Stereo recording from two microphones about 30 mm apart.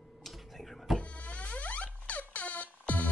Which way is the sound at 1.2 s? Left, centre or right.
Left.